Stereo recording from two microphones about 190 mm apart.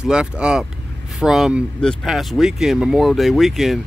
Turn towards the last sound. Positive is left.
turn(degrees=0)  # may be behind; listen again after turning